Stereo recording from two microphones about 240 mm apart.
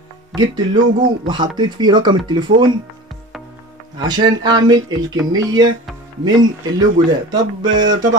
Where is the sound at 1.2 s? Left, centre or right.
Centre.